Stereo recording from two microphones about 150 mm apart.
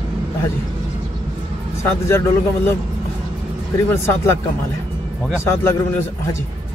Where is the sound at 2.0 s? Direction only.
15° left (ahead or behind).